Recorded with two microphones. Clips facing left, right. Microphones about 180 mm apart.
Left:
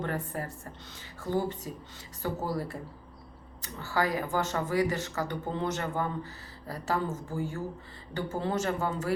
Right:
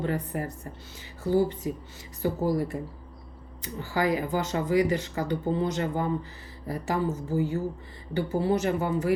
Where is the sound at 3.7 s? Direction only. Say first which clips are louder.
Right 3 dB; 15° right (ahead or behind).